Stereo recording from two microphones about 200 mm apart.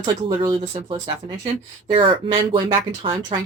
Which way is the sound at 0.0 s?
20° right (ahead or behind).